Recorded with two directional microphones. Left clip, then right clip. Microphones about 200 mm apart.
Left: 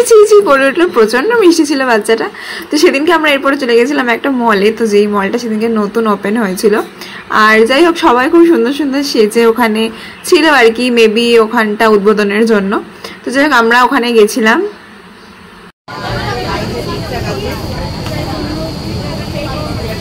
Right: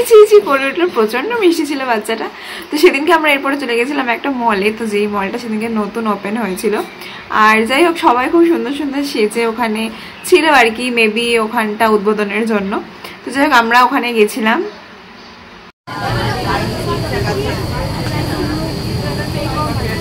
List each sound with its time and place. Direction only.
0.0 s a woman's voice: 35° left (ahead or behind)